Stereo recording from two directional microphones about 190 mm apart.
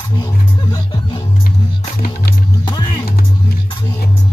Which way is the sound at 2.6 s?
25° left (ahead or behind).